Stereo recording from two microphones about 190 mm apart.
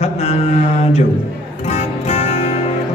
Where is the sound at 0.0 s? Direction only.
35° left (ahead or behind).